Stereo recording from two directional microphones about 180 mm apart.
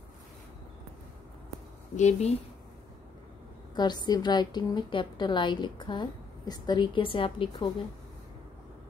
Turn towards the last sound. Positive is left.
turn(degrees=30)  # may be behind; listen again after turning